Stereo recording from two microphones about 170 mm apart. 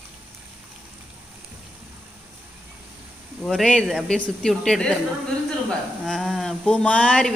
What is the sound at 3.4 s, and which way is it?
Speech, 5° left (ahead or behind).